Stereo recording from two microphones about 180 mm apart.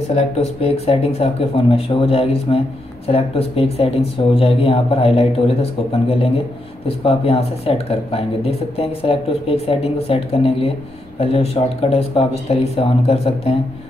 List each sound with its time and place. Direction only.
0.1 s speech: 35° left (ahead or behind)